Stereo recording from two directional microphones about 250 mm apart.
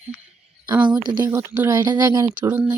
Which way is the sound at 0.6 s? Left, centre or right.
Centre.